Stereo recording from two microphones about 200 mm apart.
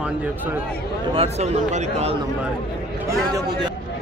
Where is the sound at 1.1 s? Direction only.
30° right (ahead or behind).